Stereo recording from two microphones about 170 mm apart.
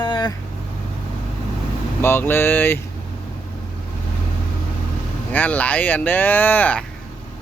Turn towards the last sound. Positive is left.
turn(degrees=10)  # may be behind; listen again after turning